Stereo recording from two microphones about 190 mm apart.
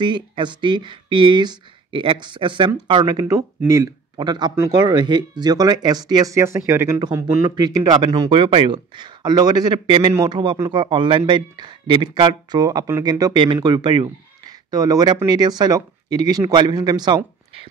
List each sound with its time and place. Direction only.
0.0 s speech: 25° right (ahead or behind)